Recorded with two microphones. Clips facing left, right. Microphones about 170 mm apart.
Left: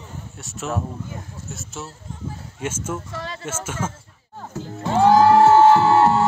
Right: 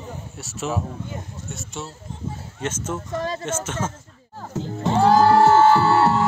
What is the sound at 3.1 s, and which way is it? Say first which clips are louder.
Speech: right 6 dB; 45° right (ahead or behind).